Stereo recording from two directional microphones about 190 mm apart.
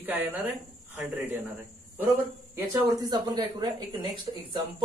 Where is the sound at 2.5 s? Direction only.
15° right (ahead or behind).